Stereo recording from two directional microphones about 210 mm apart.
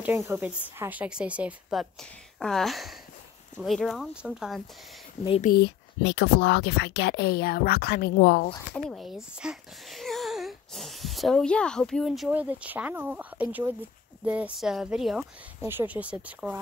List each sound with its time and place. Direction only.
0.0 s a woman's voice: 10° right (ahead or behind)
5.4 s speech: 50° left (ahead or behind)
8.7 s a woman's voice: centre (ahead or behind)